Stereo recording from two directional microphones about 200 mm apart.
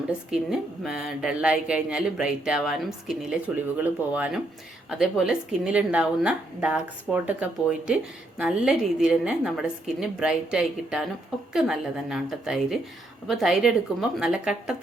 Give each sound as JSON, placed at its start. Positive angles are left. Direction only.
{"t": 0.3, "sound": "a woman's voice", "side_deg": 0}